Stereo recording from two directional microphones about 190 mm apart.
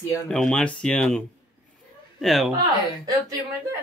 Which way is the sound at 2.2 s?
Centre (ahead or behind).